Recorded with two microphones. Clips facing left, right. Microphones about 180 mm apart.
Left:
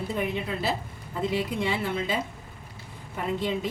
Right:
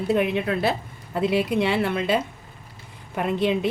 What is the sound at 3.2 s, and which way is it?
Speech, 75° right (ahead or behind).